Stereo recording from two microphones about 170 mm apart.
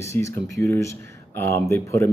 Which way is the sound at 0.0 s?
15° left (ahead or behind).